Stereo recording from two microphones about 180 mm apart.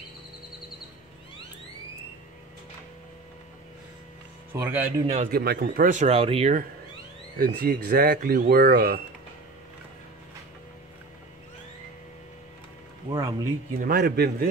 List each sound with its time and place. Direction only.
4.6 s a man's voice: 10° right (ahead or behind)
5.0 s speech: 35° right (ahead or behind)
5.3 s speech: 60° right (ahead or behind)
5.9 s speech: 40° right (ahead or behind)
7.3 s speech: 55° right (ahead or behind)
13.1 s speech: 25° right (ahead or behind)
13.7 s speech: 60° right (ahead or behind)